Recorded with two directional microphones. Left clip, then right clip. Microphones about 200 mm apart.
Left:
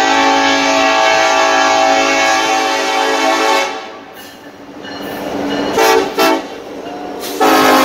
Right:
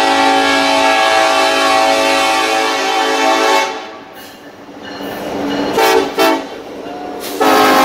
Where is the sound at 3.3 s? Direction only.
5° right (ahead or behind).